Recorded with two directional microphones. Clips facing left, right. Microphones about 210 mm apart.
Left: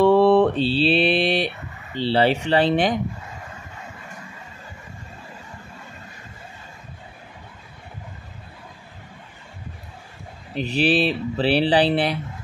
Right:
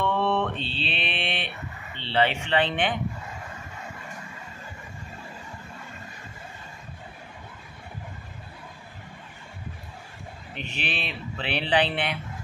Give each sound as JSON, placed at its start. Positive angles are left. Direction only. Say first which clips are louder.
{"t": 0.0, "sound": "mantra", "louder": "left 11 dB", "side_deg": 35}
{"t": 2.0, "sound": "speech", "louder": "left 6 dB", "side_deg": 35}
{"t": 10.5, "sound": "speech", "louder": "left 14 dB", "side_deg": 35}